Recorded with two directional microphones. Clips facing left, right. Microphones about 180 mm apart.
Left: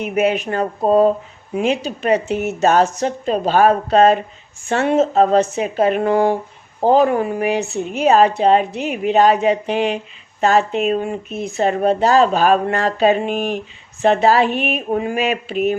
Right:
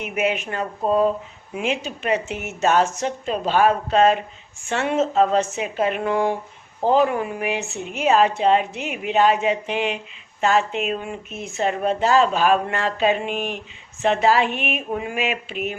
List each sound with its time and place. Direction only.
0.0 s a woman's voice: 40° left (ahead or behind)